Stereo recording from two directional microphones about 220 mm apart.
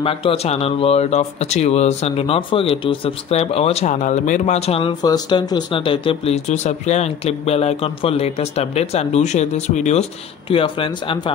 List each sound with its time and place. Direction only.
0.0 s speech: 25° left (ahead or behind)